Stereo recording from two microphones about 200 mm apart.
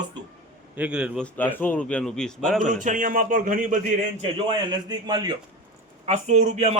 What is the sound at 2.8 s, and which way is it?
Speech, 40° right (ahead or behind).